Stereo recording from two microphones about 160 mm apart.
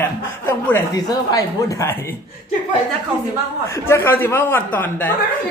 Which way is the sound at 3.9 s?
15° left (ahead or behind).